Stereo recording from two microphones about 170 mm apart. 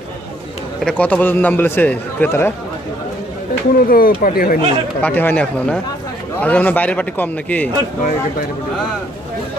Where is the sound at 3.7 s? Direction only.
60° left (ahead or behind).